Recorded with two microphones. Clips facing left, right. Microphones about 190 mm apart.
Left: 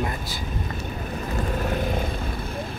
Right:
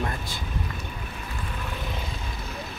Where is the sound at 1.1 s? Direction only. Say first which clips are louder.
Left 9 dB; 40° left (ahead or behind).